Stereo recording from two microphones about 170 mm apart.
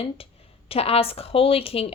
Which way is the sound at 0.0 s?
35° left (ahead or behind).